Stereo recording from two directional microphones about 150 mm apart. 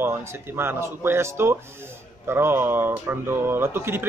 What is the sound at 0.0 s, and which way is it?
Speech, 15° right (ahead or behind).